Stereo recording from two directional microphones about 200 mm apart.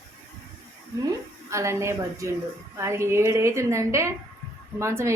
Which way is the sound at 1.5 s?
15° right (ahead or behind).